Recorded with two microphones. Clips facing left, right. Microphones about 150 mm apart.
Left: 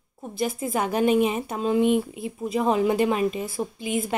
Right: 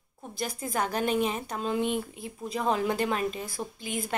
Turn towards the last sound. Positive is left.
turn(degrees=5)  # may be behind; listen again after turning